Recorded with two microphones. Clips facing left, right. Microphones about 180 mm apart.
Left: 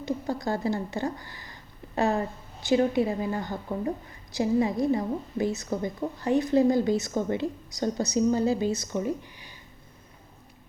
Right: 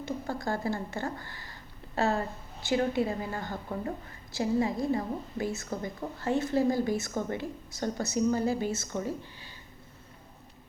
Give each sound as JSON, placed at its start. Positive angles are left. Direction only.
{"t": 0.0, "sound": "a woman's voice", "side_deg": 20}